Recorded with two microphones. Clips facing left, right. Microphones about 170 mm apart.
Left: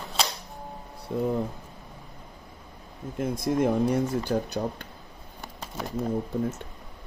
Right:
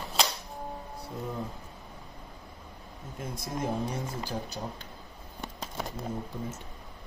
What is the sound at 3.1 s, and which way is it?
Speech, 55° left (ahead or behind).